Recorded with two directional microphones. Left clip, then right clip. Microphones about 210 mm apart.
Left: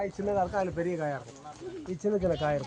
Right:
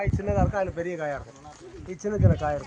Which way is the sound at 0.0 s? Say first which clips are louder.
Right 2 dB; 25° right (ahead or behind).